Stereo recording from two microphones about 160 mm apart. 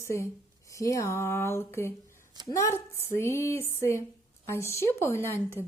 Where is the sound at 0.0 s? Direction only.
15° left (ahead or behind).